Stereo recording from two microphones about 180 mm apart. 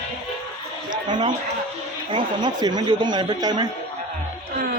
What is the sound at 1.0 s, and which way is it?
Speech, 25° right (ahead or behind).